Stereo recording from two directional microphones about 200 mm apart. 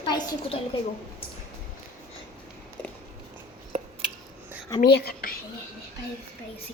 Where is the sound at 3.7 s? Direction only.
30° right (ahead or behind).